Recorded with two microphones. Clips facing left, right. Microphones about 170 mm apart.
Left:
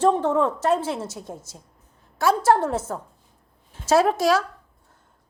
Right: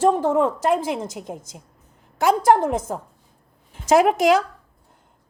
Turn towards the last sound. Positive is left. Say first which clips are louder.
# right 3 dB
turn(degrees=-15)  # may be behind; listen again after turning